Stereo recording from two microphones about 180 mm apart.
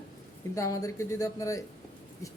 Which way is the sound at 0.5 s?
20° left (ahead or behind).